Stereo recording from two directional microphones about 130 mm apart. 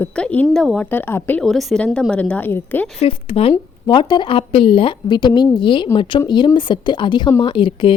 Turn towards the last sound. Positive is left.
turn(degrees=40)  # may be behind; listen again after turning